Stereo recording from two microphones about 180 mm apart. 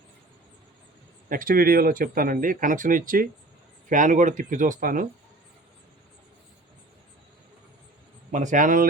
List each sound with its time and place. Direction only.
1.3 s speech: 50° right (ahead or behind)
8.3 s speech: 45° right (ahead or behind)